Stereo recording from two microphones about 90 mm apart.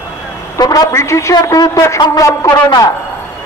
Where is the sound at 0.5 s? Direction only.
45° left (ahead or behind).